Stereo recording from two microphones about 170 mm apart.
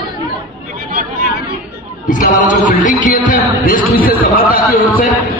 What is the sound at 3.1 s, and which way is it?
A man's voice, 50° left (ahead or behind).